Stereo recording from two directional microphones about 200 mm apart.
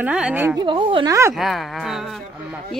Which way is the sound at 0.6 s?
25° right (ahead or behind).